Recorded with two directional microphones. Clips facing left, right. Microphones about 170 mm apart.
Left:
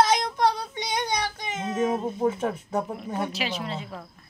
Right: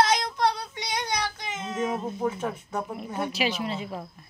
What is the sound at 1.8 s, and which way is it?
Speech, 25° left (ahead or behind).